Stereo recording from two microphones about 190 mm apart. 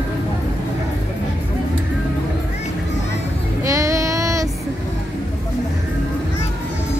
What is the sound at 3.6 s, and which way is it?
Child singing, 15° right (ahead or behind).